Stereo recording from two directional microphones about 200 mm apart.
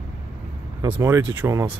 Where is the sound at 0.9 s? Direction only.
15° right (ahead or behind).